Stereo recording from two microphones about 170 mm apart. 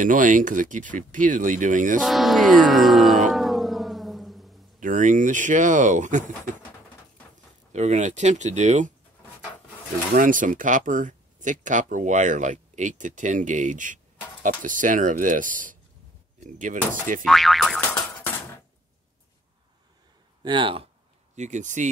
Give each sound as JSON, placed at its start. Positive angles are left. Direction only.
{"t": 0.0, "sound": "speech", "side_deg": -50}
{"t": 2.0, "sound": "speech", "side_deg": 0}
{"t": 3.3, "sound": "music", "side_deg": 0}
{"t": 4.7, "sound": "speech", "side_deg": -50}
{"t": 7.7, "sound": "speech", "side_deg": -45}
{"t": 10.1, "sound": "speech", "side_deg": -50}
{"t": 17.2, "sound": "speech", "side_deg": 0}
{"t": 20.4, "sound": "speech", "side_deg": -30}
{"t": 21.4, "sound": "speech", "side_deg": -45}